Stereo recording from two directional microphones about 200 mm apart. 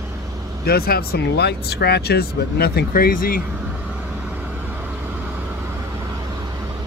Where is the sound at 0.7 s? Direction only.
50° left (ahead or behind).